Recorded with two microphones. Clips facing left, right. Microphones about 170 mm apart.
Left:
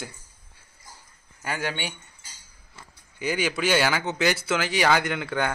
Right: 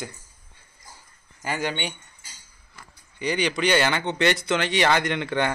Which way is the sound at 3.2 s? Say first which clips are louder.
Right 2 dB; 5° left (ahead or behind).